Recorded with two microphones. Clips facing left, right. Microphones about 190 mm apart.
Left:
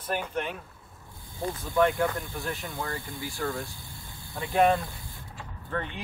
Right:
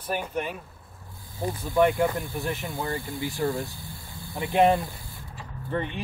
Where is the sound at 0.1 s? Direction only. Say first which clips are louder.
Right 1 dB; 10° right (ahead or behind).